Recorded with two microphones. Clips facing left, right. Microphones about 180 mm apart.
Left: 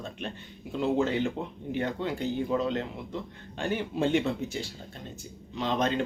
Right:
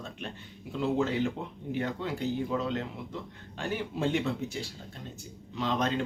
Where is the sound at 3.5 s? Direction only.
Centre (ahead or behind).